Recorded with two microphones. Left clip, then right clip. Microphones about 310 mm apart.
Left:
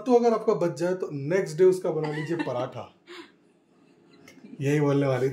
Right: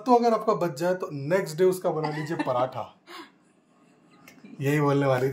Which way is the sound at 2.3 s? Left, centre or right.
Centre.